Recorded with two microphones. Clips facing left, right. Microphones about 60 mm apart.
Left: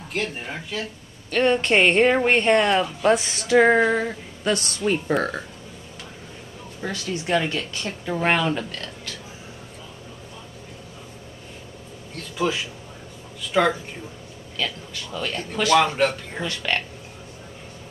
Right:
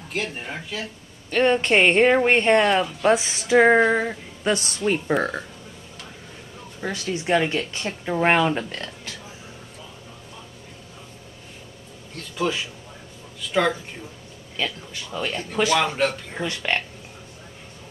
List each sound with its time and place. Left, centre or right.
0.1 s speech: centre
1.3 s speech: centre
4.8 s speech: centre
6.8 s speech: centre
12.2 s speech: centre
14.6 s speech: right
15.7 s speech: centre
16.4 s speech: right